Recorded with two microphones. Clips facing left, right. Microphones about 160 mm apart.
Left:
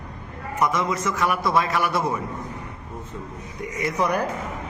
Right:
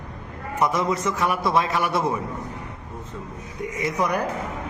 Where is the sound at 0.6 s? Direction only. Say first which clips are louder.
Right 1 dB; 30° right (ahead or behind).